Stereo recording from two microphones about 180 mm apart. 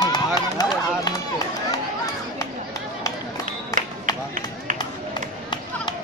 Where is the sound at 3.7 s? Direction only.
15° left (ahead or behind).